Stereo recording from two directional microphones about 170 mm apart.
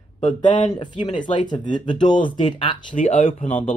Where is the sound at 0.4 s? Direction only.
50° left (ahead or behind).